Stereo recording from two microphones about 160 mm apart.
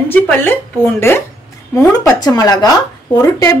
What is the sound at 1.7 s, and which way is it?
Speech, 25° left (ahead or behind).